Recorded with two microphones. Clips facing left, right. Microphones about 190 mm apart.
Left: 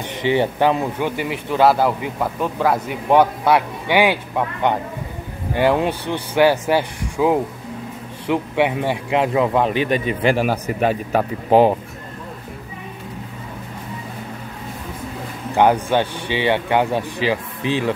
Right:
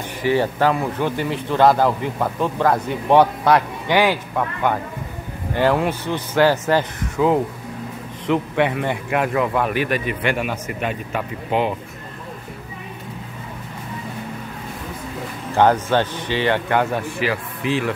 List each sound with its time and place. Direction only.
0.2 s a man's voice: 20° left (ahead or behind); by 11.7 s 40° left (ahead or behind)
15.5 s speech: 15° left (ahead or behind)